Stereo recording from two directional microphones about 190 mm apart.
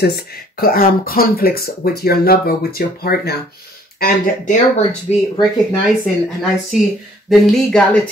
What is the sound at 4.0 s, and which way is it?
Speech, 40° left (ahead or behind).